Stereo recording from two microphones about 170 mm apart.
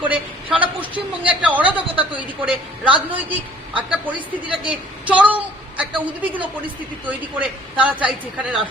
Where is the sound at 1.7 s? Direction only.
30° right (ahead or behind).